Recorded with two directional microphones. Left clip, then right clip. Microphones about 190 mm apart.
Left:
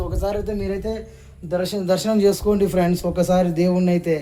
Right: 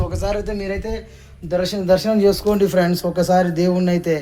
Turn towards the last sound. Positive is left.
turn(degrees=-15)  # may be behind; listen again after turning